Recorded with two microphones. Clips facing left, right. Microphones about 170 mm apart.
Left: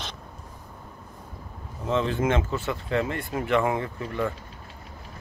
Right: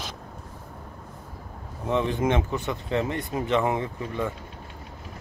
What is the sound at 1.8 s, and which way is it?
Speech, 15° right (ahead or behind).